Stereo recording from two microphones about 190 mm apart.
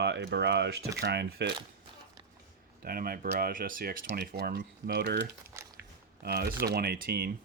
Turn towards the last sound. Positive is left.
turn(degrees=-55)  # may be behind; listen again after turning